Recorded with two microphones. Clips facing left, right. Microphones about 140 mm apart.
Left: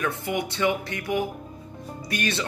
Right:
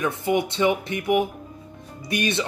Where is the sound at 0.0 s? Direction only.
20° right (ahead or behind).